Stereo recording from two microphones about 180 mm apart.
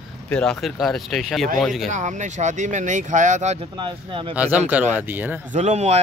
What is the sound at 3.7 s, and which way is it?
Speech, 30° right (ahead or behind).